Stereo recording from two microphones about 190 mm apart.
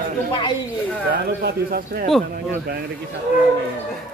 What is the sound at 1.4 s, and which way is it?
Speech, 55° right (ahead or behind).